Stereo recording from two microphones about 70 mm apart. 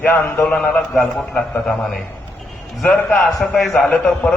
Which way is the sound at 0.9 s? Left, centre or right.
Centre.